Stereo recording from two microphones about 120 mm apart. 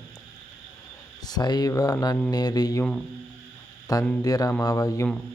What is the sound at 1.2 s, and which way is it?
Speech, 35° left (ahead or behind).